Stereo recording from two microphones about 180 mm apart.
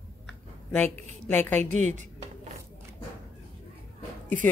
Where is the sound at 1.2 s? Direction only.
10° left (ahead or behind).